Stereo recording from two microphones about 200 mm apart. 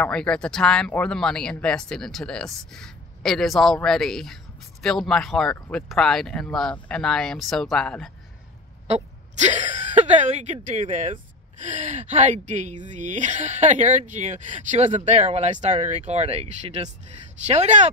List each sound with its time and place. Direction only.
0.0 s speech: 5° left (ahead or behind)
8.8 s a woman's voice: 35° right (ahead or behind)